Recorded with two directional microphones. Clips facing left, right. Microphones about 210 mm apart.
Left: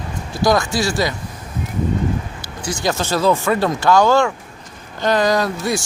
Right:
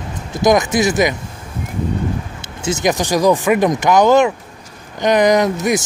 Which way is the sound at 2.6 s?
20° right (ahead or behind).